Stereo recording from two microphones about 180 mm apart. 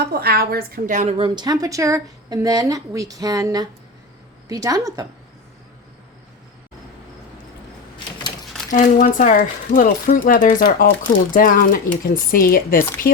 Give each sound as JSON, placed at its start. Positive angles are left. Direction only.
{"t": 0.0, "sound": "a woman's voice", "side_deg": -60}
{"t": 8.7, "sound": "speech", "side_deg": 45}